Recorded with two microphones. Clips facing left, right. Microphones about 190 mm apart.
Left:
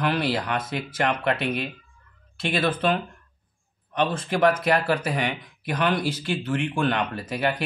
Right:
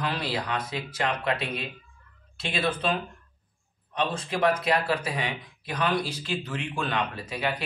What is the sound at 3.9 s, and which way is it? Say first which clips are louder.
Speech: left 4 dB; 50° left (ahead or behind).